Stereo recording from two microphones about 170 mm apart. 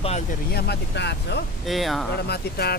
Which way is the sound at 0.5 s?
80° left.